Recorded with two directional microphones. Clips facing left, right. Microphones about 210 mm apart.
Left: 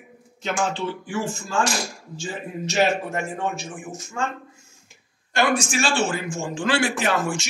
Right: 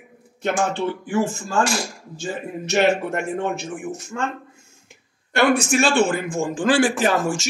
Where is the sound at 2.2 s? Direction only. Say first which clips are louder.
Right 2 dB; 60° right (ahead or behind).